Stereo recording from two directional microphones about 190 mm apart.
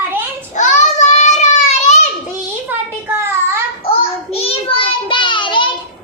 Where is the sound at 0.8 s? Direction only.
35° left (ahead or behind).